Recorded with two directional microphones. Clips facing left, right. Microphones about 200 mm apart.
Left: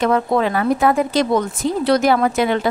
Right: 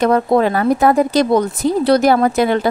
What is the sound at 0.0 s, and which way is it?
Speech, 40° right (ahead or behind).